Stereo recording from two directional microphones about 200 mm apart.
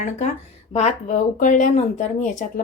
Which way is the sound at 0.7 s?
35° left (ahead or behind).